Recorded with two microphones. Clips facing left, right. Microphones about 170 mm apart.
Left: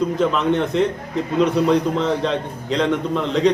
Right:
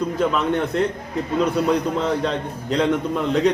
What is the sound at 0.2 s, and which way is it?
Speech, centre (ahead or behind).